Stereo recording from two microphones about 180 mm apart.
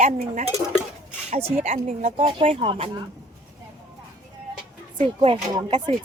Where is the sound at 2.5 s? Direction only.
30° right (ahead or behind).